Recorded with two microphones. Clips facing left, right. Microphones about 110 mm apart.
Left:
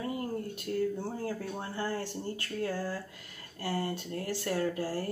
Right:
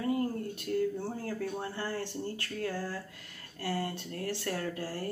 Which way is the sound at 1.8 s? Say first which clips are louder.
Left 5 dB; 15° left (ahead or behind).